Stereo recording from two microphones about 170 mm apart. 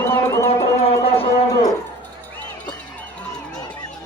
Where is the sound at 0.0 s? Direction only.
15° left (ahead or behind).